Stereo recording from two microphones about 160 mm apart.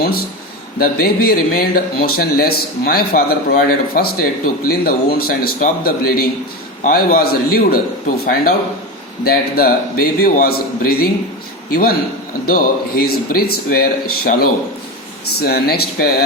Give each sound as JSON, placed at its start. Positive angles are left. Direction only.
{"t": 0.0, "sound": "speech", "side_deg": 70}
{"t": 9.2, "sound": "a man's voice", "side_deg": 70}